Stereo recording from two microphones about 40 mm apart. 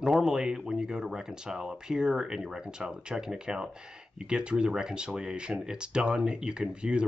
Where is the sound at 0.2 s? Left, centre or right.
Centre.